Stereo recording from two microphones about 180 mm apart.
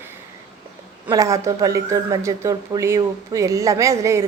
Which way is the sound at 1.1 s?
20° right (ahead or behind).